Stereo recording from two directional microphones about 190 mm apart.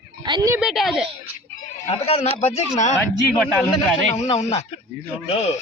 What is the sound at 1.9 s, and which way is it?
Speech, 35° left (ahead or behind).